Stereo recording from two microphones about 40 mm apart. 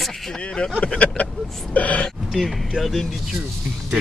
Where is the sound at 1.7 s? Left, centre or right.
Left.